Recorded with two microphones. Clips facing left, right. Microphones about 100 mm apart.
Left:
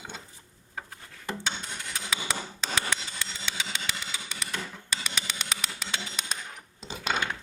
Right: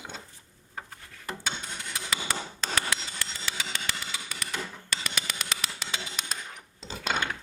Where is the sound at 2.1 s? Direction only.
Centre (ahead or behind).